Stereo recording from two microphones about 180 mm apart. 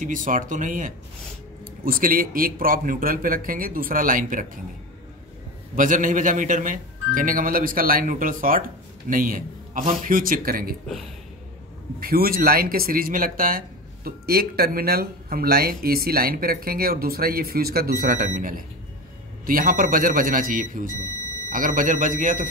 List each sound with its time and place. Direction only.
0.0 s speech: 45° right (ahead or behind)
5.8 s speech: 45° right (ahead or behind)
12.0 s speech: 55° right (ahead or behind)